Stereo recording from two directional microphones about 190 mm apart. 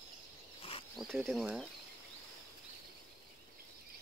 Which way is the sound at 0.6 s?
30° left (ahead or behind).